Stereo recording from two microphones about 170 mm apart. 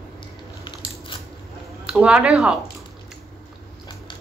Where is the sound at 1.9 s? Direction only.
5° right (ahead or behind).